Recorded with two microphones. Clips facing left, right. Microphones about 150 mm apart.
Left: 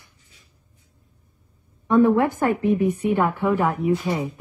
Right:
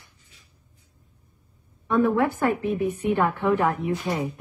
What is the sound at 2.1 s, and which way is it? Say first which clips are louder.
A woman's voice: left 3 dB; 15° left (ahead or behind).